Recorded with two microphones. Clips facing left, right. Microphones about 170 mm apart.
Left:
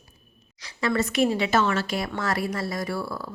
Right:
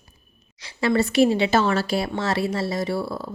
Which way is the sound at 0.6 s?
30° right (ahead or behind).